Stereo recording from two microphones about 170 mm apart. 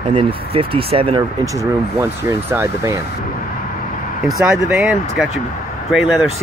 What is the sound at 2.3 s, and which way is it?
Speech, 15° right (ahead or behind).